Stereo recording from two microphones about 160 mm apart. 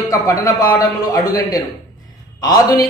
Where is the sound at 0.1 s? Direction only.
20° left (ahead or behind).